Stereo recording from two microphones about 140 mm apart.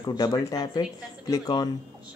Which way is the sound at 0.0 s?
30° left (ahead or behind).